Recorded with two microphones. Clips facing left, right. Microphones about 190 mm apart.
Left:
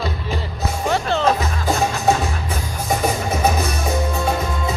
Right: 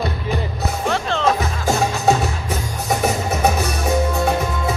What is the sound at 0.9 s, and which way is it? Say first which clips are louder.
Music: left 3 dB; 5° left (ahead or behind).